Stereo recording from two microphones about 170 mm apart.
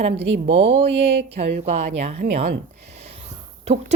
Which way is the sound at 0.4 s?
35° right (ahead or behind).